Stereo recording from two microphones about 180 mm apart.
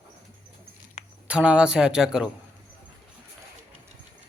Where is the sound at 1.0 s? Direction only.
40° left (ahead or behind).